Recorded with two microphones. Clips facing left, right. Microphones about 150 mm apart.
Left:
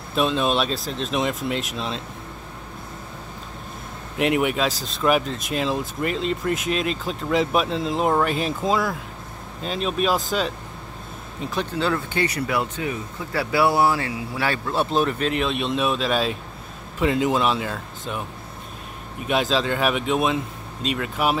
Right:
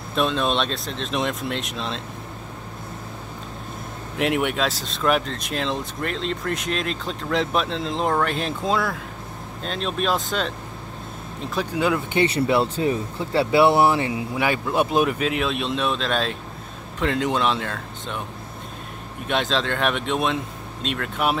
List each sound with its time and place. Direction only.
0.1 s speech: centre (ahead or behind)
4.2 s speech: centre (ahead or behind)
11.7 s speech: 15° right (ahead or behind); by 18.2 s 5° left (ahead or behind)
19.2 s speech: 5° left (ahead or behind)